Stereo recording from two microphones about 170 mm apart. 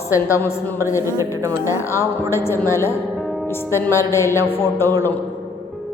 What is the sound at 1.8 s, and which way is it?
A woman's voice, 15° left (ahead or behind).